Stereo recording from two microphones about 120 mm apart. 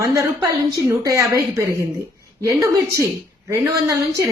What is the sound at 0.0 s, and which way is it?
A woman's voice, 25° right (ahead or behind).